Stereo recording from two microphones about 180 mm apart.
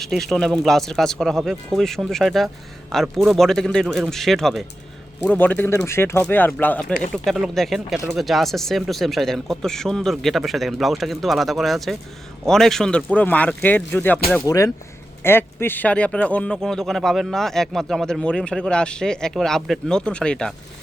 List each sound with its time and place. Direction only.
0.0 s speech: centre (ahead or behind)